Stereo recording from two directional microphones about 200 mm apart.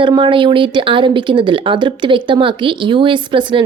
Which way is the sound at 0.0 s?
25° right (ahead or behind).